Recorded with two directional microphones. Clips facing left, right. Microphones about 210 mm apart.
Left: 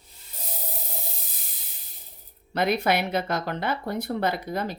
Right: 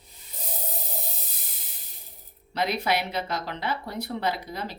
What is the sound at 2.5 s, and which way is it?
Speech, 55° left (ahead or behind).